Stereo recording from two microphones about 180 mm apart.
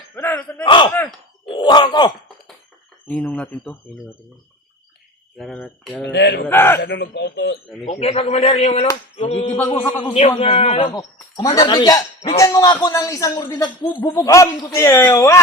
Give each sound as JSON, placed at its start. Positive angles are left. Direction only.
{"t": 0.2, "sound": "a sound", "side_deg": 10}
{"t": 0.6, "sound": "speech", "side_deg": 25}
{"t": 3.1, "sound": "a man's voice", "side_deg": 5}
{"t": 5.4, "sound": "speech", "side_deg": 0}
{"t": 6.1, "sound": "speech", "side_deg": 75}
{"t": 6.5, "sound": "a man's voice", "side_deg": 10}
{"t": 6.8, "sound": "speech", "side_deg": 70}
{"t": 7.9, "sound": "a man's voice", "side_deg": 35}
{"t": 11.3, "sound": "a man's voice", "side_deg": 20}